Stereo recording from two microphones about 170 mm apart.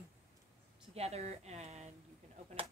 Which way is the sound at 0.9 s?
40° right (ahead or behind).